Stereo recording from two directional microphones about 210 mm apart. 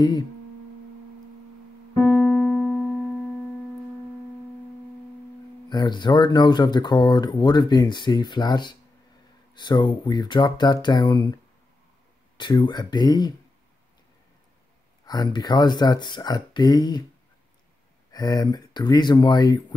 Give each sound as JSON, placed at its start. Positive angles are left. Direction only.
{"t": 2.0, "sound": "keyboard", "side_deg": 10}
{"t": 5.7, "sound": "speech", "side_deg": 20}
{"t": 12.4, "sound": "speech", "side_deg": 20}
{"t": 15.0, "sound": "speech", "side_deg": 20}
{"t": 18.1, "sound": "speech", "side_deg": 20}